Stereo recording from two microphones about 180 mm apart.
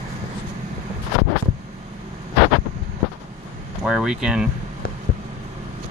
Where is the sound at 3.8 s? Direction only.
5° right (ahead or behind).